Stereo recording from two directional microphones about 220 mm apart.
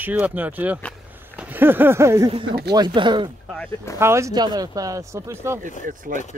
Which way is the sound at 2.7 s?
20° right (ahead or behind).